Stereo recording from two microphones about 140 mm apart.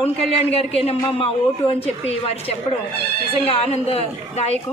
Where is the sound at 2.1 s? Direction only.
45° left (ahead or behind).